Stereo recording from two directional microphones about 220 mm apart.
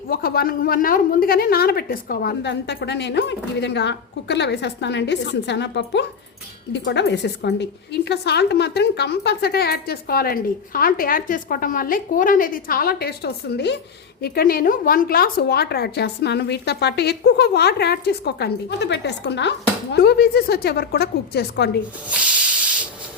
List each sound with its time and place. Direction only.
0.1 s speech: 40° left (ahead or behind)
22.1 s hiss: 5° right (ahead or behind)